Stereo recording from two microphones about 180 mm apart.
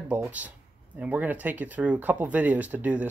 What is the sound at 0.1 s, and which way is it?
Speech, 10° right (ahead or behind).